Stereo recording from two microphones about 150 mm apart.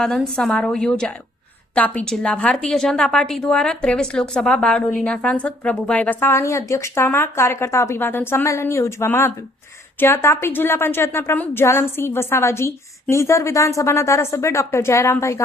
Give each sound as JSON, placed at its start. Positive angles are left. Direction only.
{"t": 0.3, "sound": "a woman's voice", "side_deg": 5}